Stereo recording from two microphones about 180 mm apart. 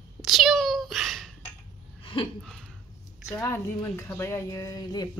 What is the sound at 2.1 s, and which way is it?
Speech, 30° left (ahead or behind).